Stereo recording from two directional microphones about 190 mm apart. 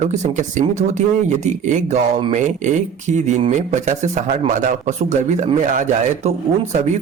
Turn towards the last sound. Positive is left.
turn(degrees=-35)  # may be behind; listen again after turning